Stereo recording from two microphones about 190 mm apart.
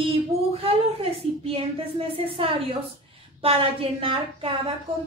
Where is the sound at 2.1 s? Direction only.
30° right (ahead or behind).